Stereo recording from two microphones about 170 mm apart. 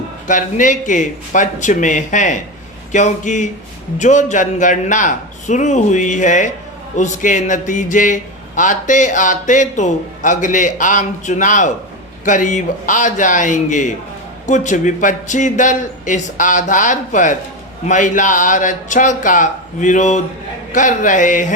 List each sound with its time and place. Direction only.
0.3 s a man's voice: 50° left (ahead or behind)